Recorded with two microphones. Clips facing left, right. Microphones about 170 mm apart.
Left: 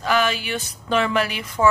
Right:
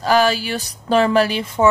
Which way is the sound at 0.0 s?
35° right (ahead or behind).